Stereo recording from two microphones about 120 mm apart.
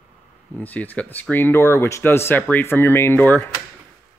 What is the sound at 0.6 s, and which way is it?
Speech, 15° left (ahead or behind).